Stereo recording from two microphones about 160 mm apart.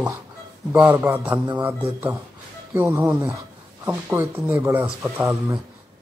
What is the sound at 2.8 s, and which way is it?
Speech, 15° right (ahead or behind).